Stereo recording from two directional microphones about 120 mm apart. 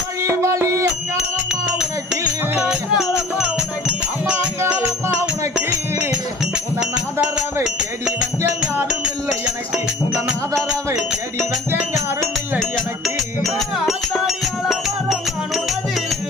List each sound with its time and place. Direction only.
0.3 s a sound: 25° right (ahead or behind)
2.6 s music: 5° right (ahead or behind)
5.5 s music: 5° right (ahead or behind)
9.7 s music: 5° right (ahead or behind)
12.2 s music: 5° left (ahead or behind)